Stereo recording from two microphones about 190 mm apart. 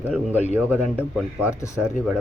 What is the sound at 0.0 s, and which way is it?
Speech, 10° right (ahead or behind).